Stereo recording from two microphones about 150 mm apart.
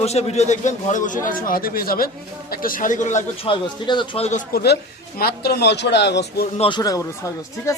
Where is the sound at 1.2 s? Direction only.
75° left (ahead or behind); by 3.2 s 60° left (ahead or behind).